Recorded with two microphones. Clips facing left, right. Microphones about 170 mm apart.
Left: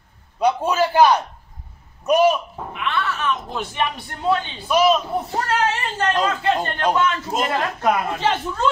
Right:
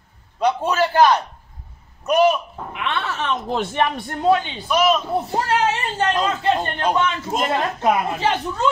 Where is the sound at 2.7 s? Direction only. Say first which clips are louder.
Even; 70° right (ahead or behind).